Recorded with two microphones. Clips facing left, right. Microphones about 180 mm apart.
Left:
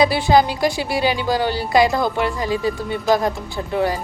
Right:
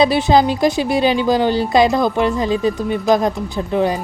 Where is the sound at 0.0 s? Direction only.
20° right (ahead or behind).